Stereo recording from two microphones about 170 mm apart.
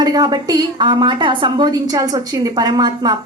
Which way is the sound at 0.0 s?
20° right (ahead or behind).